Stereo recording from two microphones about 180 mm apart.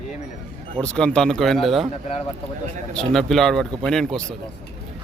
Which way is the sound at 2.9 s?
Centre (ahead or behind).